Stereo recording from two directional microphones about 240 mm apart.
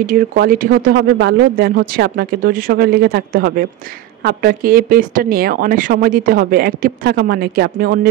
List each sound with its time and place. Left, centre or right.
0.0 s speech: right